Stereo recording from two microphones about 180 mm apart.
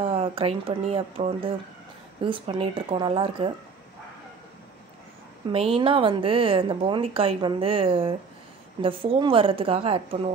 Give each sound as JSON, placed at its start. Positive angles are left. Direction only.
{"t": 0.0, "sound": "a woman's voice", "side_deg": -30}
{"t": 5.5, "sound": "a woman's voice", "side_deg": -30}